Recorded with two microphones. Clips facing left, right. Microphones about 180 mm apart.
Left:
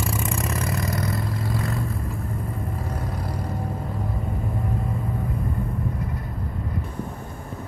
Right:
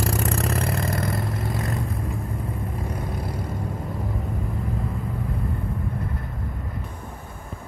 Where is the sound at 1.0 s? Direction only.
25° right (ahead or behind).